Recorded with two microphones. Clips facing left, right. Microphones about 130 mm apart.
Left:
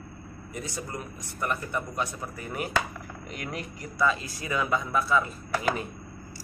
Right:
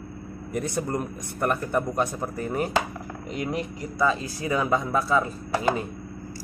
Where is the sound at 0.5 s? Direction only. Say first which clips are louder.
Right 9 dB; 55° right (ahead or behind); by 5.2 s 35° right (ahead or behind).